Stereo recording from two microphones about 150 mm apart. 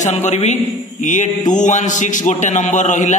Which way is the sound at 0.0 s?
50° left (ahead or behind).